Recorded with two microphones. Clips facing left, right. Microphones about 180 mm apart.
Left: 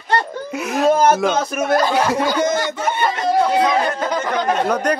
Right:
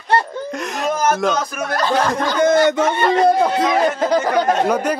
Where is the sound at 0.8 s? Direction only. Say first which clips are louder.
Left 5 dB; 30° left (ahead or behind).